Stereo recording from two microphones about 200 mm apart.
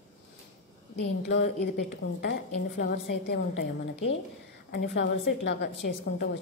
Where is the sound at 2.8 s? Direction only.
60° left (ahead or behind).